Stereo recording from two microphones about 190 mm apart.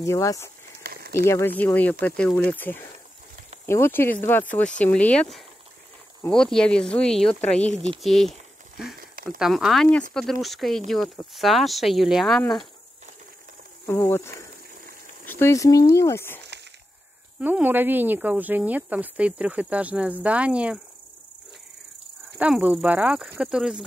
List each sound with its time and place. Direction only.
0.0 s speech: 15° left (ahead or behind)
0.8 s a sound: 55° right (ahead or behind)
1.1 s speech: 15° left (ahead or behind)
8.0 s a sound: centre (ahead or behind)
9.4 s speech: centre (ahead or behind)
13.8 s speech: 10° left (ahead or behind)
17.4 s speech: 10° right (ahead or behind)
22.4 s speech: 10° right (ahead or behind)